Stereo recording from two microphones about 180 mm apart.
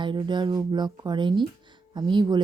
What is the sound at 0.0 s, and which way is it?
Speech, 25° right (ahead or behind).